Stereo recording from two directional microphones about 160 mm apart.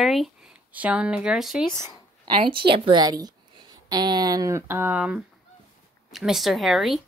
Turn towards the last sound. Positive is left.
turn(degrees=0)  # may be behind; listen again after turning